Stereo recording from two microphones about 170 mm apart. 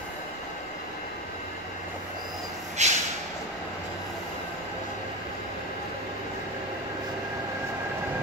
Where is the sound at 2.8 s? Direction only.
40° right (ahead or behind).